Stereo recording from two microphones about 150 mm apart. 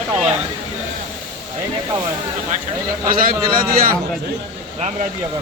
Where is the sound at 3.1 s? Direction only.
70° right (ahead or behind).